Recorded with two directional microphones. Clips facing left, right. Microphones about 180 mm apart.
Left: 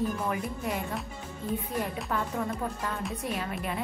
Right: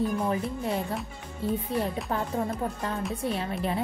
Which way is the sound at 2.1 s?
30° right (ahead or behind).